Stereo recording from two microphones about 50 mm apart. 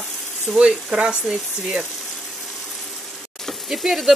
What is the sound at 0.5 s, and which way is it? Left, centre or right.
Speech, centre.